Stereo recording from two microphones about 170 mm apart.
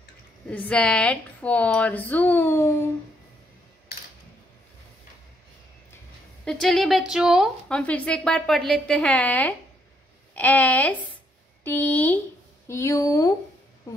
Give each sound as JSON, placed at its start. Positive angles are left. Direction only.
{"t": 0.5, "sound": "speech", "side_deg": 5}
{"t": 6.4, "sound": "a woman's voice", "side_deg": 0}